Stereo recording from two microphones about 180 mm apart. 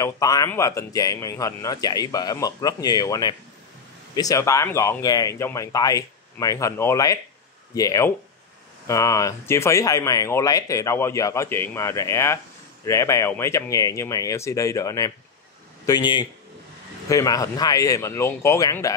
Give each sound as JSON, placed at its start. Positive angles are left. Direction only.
{"t": 0.0, "sound": "a man's voice", "side_deg": 20}